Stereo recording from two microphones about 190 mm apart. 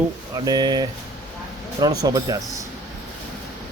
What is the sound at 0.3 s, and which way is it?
Speech, 20° right (ahead or behind).